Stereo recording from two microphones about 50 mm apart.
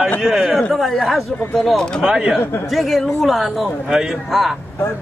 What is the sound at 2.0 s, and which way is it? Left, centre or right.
Speech, right.